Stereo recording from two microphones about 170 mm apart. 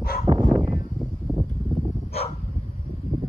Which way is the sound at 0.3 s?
30° right (ahead or behind).